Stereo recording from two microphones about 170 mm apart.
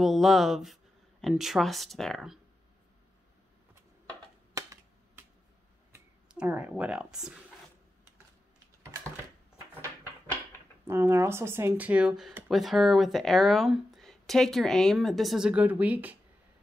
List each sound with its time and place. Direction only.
0.0 s speech: centre (ahead or behind)
4.6 s computer keyboard: 20° right (ahead or behind)
5.9 s speech: 10° right (ahead or behind)
10.9 s speech: 15° right (ahead or behind)